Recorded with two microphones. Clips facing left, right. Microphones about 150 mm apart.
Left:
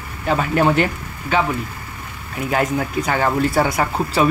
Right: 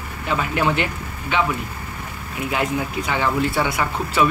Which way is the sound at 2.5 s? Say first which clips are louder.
Left 4 dB; 45° left (ahead or behind).